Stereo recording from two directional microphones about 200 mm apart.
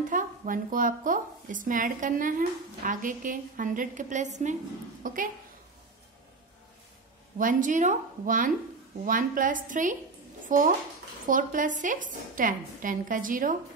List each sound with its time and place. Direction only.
0.1 s a woman's voice: 40° right (ahead or behind)
7.3 s speech: 40° right (ahead or behind)